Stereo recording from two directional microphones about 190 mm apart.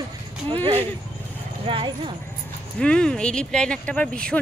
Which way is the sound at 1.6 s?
25° right (ahead or behind).